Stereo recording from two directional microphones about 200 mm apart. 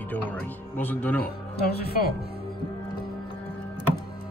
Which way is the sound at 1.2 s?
50° left (ahead or behind).